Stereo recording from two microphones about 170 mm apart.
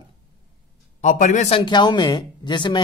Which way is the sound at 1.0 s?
45° left (ahead or behind).